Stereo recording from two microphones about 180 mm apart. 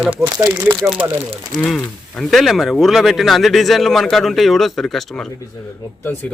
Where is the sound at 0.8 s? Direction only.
Centre (ahead or behind).